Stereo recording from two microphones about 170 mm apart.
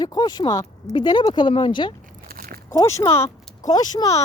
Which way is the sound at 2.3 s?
60° right (ahead or behind).